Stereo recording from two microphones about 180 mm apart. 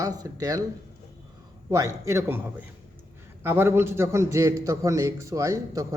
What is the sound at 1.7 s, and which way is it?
A man's voice, 15° right (ahead or behind).